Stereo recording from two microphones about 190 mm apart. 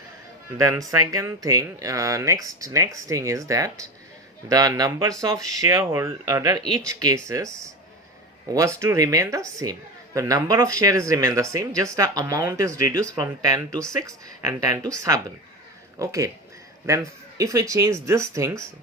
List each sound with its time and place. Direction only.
0.5 s speech: 20° right (ahead or behind)
8.5 s speech: 15° right (ahead or behind)